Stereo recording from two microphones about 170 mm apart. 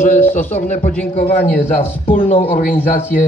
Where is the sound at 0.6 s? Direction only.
45° left (ahead or behind).